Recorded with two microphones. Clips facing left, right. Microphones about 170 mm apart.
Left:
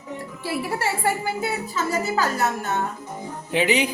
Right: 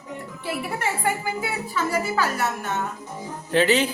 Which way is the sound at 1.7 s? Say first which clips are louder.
Right 1 dB; 20° left (ahead or behind).